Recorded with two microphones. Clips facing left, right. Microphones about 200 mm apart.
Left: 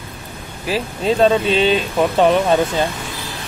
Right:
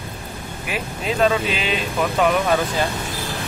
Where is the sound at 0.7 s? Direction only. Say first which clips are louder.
Left 7 dB; 30° left (ahead or behind).